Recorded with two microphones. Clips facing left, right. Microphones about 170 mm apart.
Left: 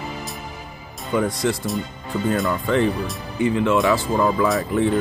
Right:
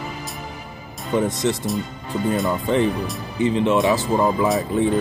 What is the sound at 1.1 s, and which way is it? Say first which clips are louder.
Speech: right 1 dB; 20° right (ahead or behind).